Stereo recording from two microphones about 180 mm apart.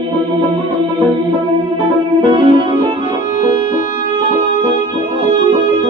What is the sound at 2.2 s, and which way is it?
Music, 30° right (ahead or behind).